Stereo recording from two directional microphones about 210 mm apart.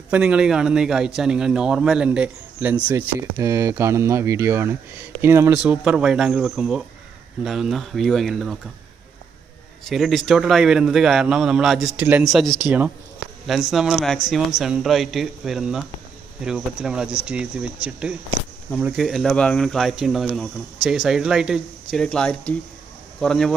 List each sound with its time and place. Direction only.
0.1 s a man's voice: 5° right (ahead or behind)
9.8 s a man's voice: centre (ahead or behind)